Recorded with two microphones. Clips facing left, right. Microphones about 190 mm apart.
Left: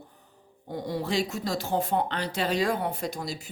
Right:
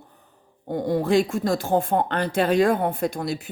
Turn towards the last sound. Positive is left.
turn(degrees=-60)  # may be behind; listen again after turning